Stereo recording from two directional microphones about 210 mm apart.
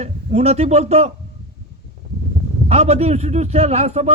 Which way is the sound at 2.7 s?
30° right (ahead or behind).